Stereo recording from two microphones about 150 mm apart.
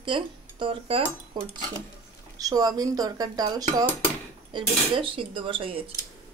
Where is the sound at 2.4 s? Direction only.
25° right (ahead or behind).